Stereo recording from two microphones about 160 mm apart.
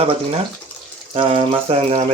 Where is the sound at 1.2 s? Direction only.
35° right (ahead or behind).